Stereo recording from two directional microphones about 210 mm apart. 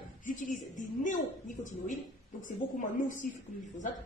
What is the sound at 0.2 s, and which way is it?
A woman's voice, 40° left (ahead or behind).